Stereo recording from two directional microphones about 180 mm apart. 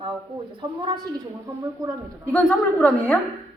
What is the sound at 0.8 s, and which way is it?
Speech, 25° right (ahead or behind).